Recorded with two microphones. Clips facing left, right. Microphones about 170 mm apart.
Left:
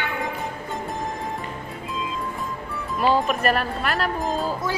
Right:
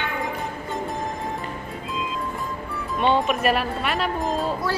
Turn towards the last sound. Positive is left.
turn(degrees=0)  # may be behind; listen again after turning